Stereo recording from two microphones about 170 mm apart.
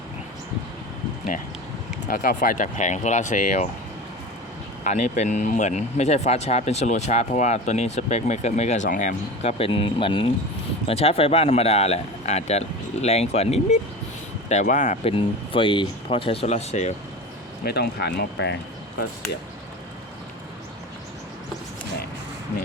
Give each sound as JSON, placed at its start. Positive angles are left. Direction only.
{"t": 2.0, "sound": "speech", "side_deg": 60}
{"t": 4.8, "sound": "speech", "side_deg": 45}
{"t": 15.5, "sound": "speech", "side_deg": 30}
{"t": 17.7, "sound": "speech", "side_deg": 70}